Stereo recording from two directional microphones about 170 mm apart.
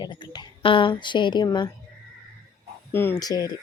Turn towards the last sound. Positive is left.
turn(degrees=20)  # may be behind; listen again after turning